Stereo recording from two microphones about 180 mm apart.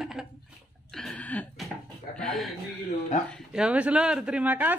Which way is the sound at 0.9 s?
Centre (ahead or behind).